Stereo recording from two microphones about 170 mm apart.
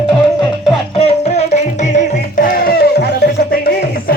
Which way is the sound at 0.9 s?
40° left (ahead or behind).